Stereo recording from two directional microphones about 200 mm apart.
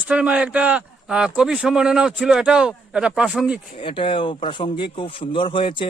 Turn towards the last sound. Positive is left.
turn(degrees=25)  # may be behind; listen again after turning